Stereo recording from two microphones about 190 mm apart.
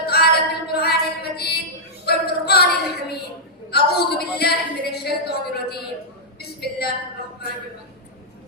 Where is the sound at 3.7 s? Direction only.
55° left (ahead or behind).